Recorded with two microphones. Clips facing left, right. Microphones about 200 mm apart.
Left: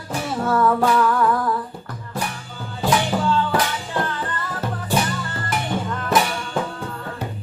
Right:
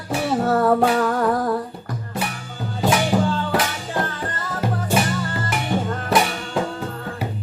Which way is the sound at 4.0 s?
45° right (ahead or behind).